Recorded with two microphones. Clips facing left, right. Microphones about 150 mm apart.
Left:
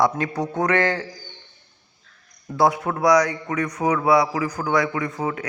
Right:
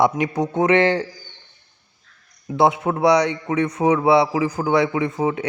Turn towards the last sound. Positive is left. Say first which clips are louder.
# right 5 dB
turn(degrees=-20)  # may be behind; listen again after turning